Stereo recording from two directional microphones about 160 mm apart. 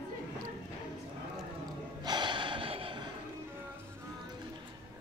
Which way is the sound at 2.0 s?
30° right (ahead or behind).